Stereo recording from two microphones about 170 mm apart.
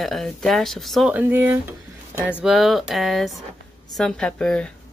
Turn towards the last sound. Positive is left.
turn(degrees=5)  # may be behind; listen again after turning